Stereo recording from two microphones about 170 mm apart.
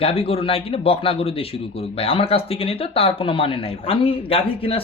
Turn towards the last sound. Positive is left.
turn(degrees=35)  # may be behind; listen again after turning